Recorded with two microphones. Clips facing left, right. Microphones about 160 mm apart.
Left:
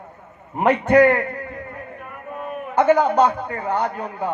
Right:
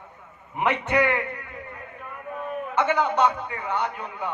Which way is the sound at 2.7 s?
40° left (ahead or behind).